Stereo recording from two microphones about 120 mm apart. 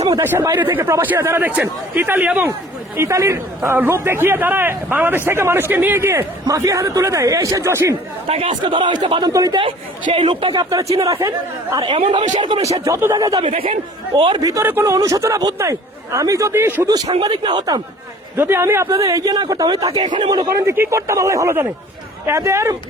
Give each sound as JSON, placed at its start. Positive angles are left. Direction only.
{"t": 0.2, "sound": "a man's voice", "side_deg": -20}
{"t": 3.0, "sound": "a man's voice", "side_deg": -25}
{"t": 8.3, "sound": "a man's voice", "side_deg": -60}
{"t": 8.6, "sound": "speech", "side_deg": -40}
{"t": 10.2, "sound": "speech", "side_deg": -45}
{"t": 12.8, "sound": "a man's voice", "side_deg": -25}
{"t": 14.2, "sound": "speech", "side_deg": -40}
{"t": 14.4, "sound": "a man's voice", "side_deg": -25}
{"t": 17.2, "sound": "speech", "side_deg": -40}
{"t": 18.3, "sound": "a man's voice", "side_deg": -20}
{"t": 20.7, "sound": "a man's voice", "side_deg": -20}